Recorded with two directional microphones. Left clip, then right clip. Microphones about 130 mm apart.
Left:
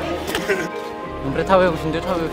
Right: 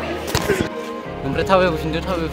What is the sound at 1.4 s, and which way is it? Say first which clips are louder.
Speech: even; 10° right (ahead or behind).